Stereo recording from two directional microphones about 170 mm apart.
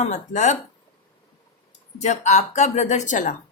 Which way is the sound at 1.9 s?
40° left (ahead or behind).